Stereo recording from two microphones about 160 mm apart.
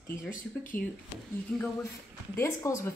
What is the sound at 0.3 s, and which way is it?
Speech, 55° left (ahead or behind).